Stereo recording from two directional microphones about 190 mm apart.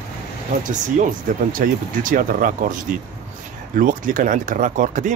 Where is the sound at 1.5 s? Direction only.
45° right (ahead or behind).